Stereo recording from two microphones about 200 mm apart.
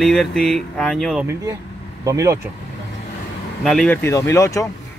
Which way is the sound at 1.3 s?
15° right (ahead or behind).